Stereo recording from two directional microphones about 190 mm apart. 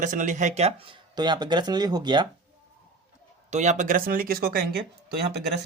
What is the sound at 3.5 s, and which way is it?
Speech, 35° right (ahead or behind).